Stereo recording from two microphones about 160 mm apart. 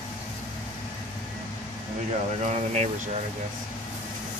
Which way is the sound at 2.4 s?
45° right (ahead or behind).